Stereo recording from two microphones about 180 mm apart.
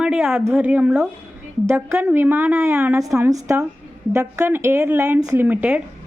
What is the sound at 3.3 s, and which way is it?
A woman's voice, 20° right (ahead or behind).